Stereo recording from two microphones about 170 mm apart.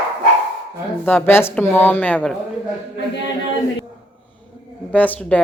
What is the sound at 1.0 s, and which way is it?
Speech, 10° left (ahead or behind).